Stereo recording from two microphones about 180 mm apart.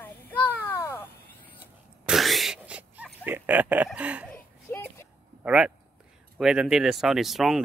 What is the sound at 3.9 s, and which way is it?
Speech, 5° right (ahead or behind).